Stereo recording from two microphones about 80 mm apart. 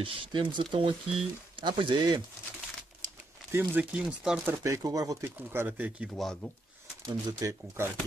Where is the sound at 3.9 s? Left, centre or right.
Centre.